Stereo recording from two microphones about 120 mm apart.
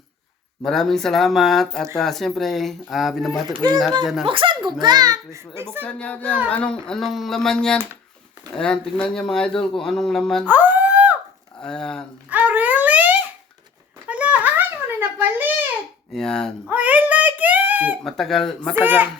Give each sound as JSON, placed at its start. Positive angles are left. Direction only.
{"t": 0.6, "sound": "speech", "side_deg": 5}
{"t": 3.5, "sound": "a child's voice", "side_deg": -35}
{"t": 4.0, "sound": "speech", "side_deg": 0}
{"t": 4.3, "sound": "a child's voice", "side_deg": -45}
{"t": 5.8, "sound": "speech", "side_deg": 10}
{"t": 10.4, "sound": "a sound", "side_deg": -15}
{"t": 11.6, "sound": "speech", "side_deg": 5}
{"t": 12.3, "sound": "dog", "side_deg": -10}
{"t": 14.1, "sound": "a sound", "side_deg": -10}
{"t": 16.1, "sound": "speech", "side_deg": 5}
{"t": 16.6, "sound": "a sound", "side_deg": -15}
{"t": 18.0, "sound": "speech", "side_deg": 5}
{"t": 18.7, "sound": "a child's voice", "side_deg": -15}